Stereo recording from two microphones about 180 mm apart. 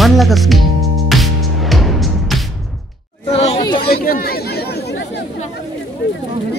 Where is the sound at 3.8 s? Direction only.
60° left (ahead or behind).